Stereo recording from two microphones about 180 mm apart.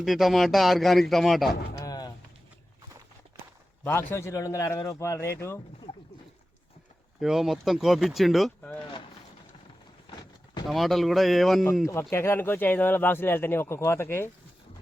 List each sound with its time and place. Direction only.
0.0 s speech: centre (ahead or behind)
1.8 s a sound: 20° left (ahead or behind)
3.8 s speech: 15° left (ahead or behind)
7.2 s speech: centre (ahead or behind)
10.7 s speech: centre (ahead or behind)
12.1 s speech: 15° left (ahead or behind)